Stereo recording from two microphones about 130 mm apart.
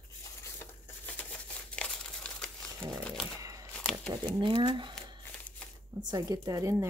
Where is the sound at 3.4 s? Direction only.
25° right (ahead or behind).